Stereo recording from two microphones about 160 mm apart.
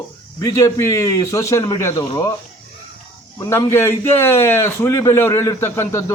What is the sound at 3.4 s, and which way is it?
A man's voice, 15° left (ahead or behind).